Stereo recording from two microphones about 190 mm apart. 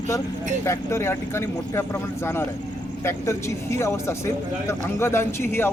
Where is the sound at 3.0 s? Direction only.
15° left (ahead or behind).